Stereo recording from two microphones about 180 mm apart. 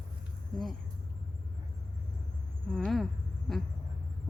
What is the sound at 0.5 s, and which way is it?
Speech, centre (ahead or behind).